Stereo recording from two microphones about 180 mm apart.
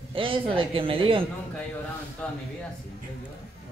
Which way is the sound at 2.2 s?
5° left (ahead or behind).